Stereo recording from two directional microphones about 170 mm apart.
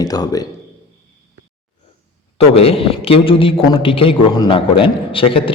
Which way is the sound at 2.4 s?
35° left (ahead or behind).